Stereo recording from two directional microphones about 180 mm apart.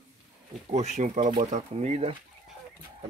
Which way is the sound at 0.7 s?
40° right (ahead or behind).